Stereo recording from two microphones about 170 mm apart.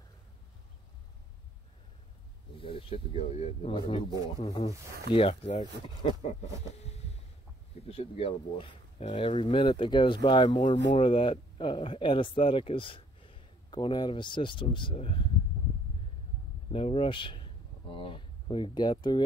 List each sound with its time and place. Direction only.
2.5 s speech: 30° left (ahead or behind)
5.1 s speech: 35° left (ahead or behind)
7.8 s speech: 35° left (ahead or behind)
16.7 s speech: 35° left (ahead or behind)